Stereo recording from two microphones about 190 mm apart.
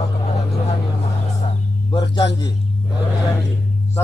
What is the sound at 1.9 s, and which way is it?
Music, 25° left (ahead or behind).